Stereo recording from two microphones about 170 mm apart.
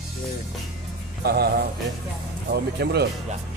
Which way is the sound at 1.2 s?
70° right (ahead or behind).